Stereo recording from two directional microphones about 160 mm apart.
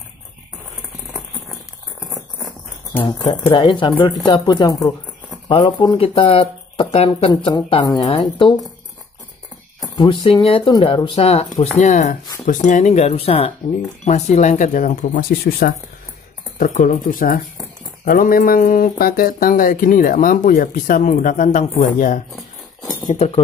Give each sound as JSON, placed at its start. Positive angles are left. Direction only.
{"t": 3.5, "sound": "speech", "side_deg": 30}
{"t": 9.8, "sound": "speech", "side_deg": 30}
{"t": 23.1, "sound": "speech", "side_deg": 40}